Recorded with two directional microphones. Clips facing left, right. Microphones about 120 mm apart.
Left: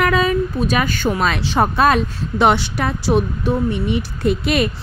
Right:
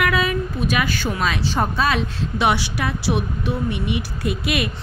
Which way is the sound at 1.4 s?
65° left (ahead or behind).